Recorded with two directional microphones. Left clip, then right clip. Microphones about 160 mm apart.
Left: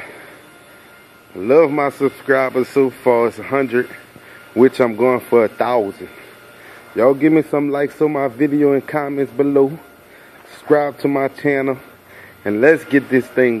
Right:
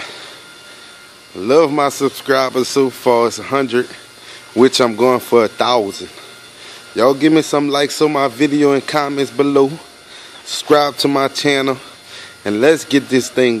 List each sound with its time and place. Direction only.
1.4 s speech: 30° right (ahead or behind)
7.0 s speech: 25° right (ahead or behind)